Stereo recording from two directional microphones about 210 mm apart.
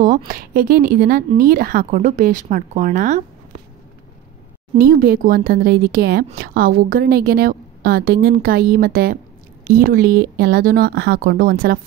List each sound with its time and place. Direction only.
0.3 s a woman's voice: 45° right (ahead or behind)
4.7 s a woman's voice: 45° right (ahead or behind)